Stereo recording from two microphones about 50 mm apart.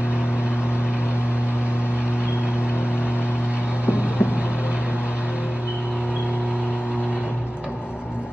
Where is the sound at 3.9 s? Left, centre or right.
Right.